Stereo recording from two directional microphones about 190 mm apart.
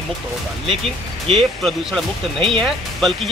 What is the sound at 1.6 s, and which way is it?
Speech, centre (ahead or behind).